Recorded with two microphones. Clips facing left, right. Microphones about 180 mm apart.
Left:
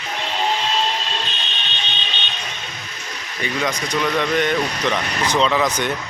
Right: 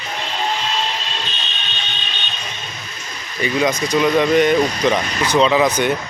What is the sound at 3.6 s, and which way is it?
Speech, 15° right (ahead or behind).